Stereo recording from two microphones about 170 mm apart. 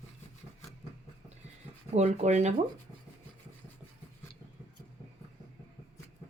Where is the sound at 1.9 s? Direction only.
40° right (ahead or behind).